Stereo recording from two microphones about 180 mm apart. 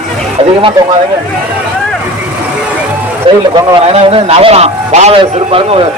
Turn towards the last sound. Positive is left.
turn(degrees=-30)  # may be behind; listen again after turning